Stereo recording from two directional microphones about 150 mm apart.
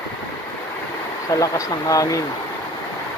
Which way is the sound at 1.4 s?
20° left (ahead or behind).